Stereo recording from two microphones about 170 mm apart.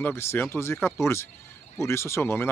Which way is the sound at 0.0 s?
15° left (ahead or behind).